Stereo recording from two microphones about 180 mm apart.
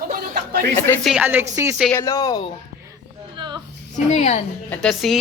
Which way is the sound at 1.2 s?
15° right (ahead or behind).